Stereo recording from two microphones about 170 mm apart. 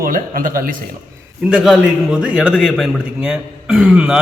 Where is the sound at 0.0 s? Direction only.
55° right (ahead or behind).